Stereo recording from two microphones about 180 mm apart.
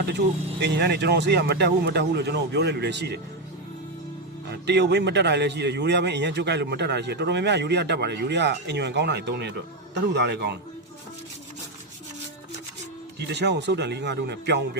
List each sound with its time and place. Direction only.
0.6 s a man's voice: 70° right (ahead or behind)
4.6 s a man's voice: 70° right (ahead or behind)
13.1 s a man's voice: 70° right (ahead or behind)